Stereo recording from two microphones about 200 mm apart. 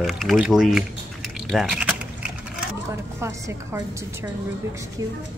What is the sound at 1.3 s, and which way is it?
Typing, centre (ahead or behind).